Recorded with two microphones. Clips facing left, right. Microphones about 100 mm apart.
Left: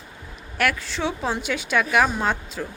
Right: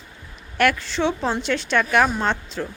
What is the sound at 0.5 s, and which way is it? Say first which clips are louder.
A woman's voice: right 4 dB; centre (ahead or behind).